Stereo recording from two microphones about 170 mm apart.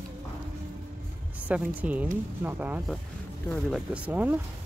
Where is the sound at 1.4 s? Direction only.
10° right (ahead or behind).